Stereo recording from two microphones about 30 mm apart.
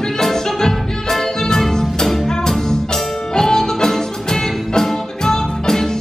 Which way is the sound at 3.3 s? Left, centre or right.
Centre.